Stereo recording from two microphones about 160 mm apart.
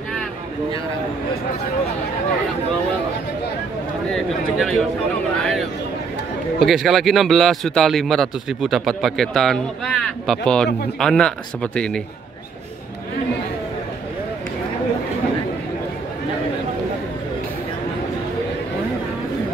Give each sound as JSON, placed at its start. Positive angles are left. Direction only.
{"t": 4.1, "sound": "a man's voice", "side_deg": 5}